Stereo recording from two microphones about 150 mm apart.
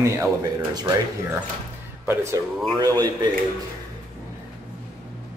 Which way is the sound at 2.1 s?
20° right (ahead or behind).